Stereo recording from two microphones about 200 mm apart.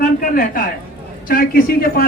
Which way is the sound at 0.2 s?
45° left (ahead or behind).